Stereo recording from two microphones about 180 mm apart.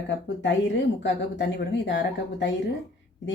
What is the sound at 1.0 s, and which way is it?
A woman's voice, 85° left.